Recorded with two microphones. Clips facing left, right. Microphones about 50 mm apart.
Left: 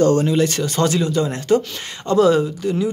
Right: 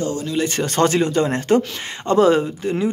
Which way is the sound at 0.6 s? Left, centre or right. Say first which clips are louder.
Right 2 dB; right.